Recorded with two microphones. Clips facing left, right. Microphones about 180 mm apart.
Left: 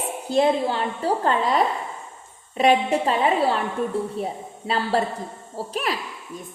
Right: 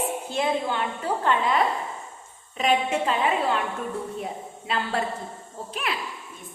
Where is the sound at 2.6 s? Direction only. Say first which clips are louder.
Left 4 dB; 35° left (ahead or behind).